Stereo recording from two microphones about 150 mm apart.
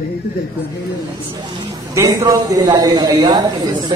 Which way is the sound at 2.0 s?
20° right (ahead or behind).